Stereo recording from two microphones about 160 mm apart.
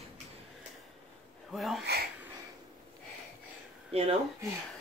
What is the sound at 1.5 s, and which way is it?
Speech, centre (ahead or behind).